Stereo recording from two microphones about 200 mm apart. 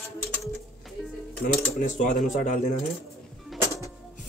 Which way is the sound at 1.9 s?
40° left (ahead or behind).